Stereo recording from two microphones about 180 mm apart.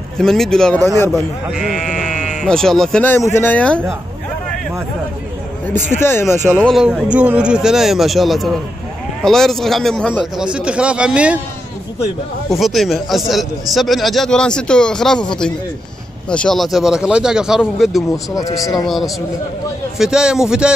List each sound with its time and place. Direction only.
0.2 s a man's voice: centre (ahead or behind)
0.8 s speech: 15° left (ahead or behind)
2.4 s speech: 5° left (ahead or behind)
5.9 s speech: 15° left (ahead or behind)
6.7 s a man's voice: centre (ahead or behind)
10.4 s a man's voice: 5° right (ahead or behind)
12.4 s a man's voice: centre (ahead or behind)
18.1 s speech: 20° left (ahead or behind)
18.9 s a man's voice: centre (ahead or behind)